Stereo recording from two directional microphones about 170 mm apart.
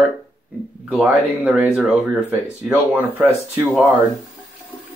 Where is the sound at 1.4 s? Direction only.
5° right (ahead or behind).